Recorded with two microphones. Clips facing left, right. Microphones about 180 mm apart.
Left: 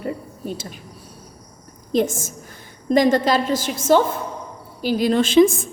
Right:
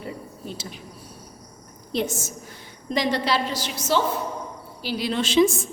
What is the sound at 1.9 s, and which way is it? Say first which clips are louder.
A woman's voice: left 6 dB; 45° left (ahead or behind).